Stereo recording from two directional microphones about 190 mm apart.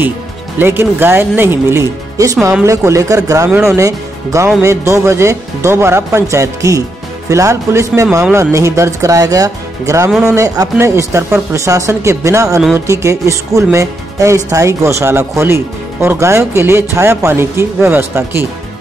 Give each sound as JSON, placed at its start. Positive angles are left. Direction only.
{"t": 0.6, "sound": "speech", "side_deg": -10}